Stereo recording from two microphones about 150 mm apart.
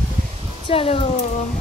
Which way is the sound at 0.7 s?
35° left (ahead or behind).